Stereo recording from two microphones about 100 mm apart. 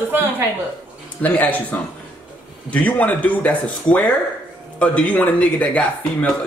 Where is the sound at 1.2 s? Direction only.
15° left (ahead or behind).